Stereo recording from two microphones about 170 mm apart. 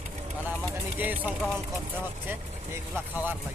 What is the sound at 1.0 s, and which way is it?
Speech, 10° right (ahead or behind).